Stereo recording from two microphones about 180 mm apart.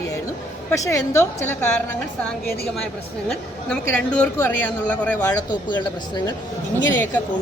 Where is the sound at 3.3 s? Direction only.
5° left (ahead or behind).